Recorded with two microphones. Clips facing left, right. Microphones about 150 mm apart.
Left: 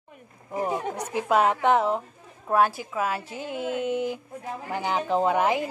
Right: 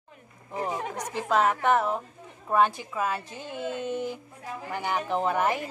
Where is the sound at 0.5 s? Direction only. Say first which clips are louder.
Left 3 dB; 10° left (ahead or behind).